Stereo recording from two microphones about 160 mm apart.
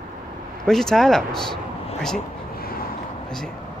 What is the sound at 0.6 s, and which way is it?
Speech, 5° left (ahead or behind).